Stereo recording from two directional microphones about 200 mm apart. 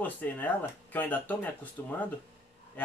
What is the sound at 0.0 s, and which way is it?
Speech, 10° left (ahead or behind).